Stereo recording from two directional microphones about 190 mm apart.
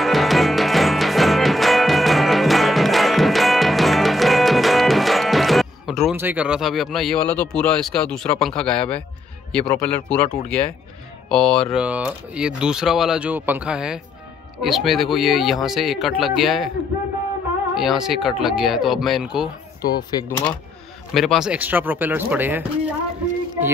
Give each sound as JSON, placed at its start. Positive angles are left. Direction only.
{"t": 0.0, "sound": "music", "side_deg": 0}
{"t": 6.1, "sound": "speech", "side_deg": -10}
{"t": 17.7, "sound": "speech", "side_deg": 0}
{"t": 19.8, "sound": "speech", "side_deg": 20}
{"t": 21.1, "sound": "speech", "side_deg": 0}